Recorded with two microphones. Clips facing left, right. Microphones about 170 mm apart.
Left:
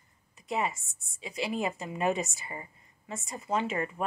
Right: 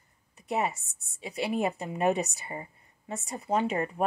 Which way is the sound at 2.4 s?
35° right (ahead or behind).